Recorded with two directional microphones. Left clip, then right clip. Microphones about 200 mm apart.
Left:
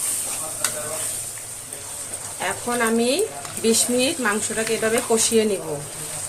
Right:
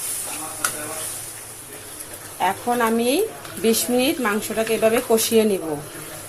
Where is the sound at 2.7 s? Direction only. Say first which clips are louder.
Left 3 dB; 15° right (ahead or behind).